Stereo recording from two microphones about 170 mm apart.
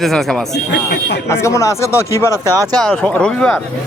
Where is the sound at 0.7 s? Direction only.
85° left.